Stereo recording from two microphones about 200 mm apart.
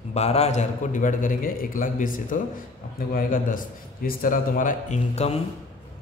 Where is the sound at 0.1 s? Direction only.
30° left (ahead or behind).